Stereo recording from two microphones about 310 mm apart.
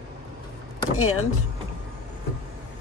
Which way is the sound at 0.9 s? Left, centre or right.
Left.